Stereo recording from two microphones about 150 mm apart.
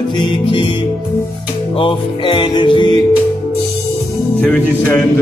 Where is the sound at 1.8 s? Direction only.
35° left (ahead or behind).